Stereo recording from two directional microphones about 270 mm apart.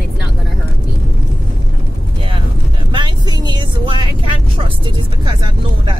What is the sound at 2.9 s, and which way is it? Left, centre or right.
Speech, centre.